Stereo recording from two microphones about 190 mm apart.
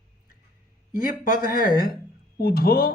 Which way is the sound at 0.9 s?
50° left (ahead or behind).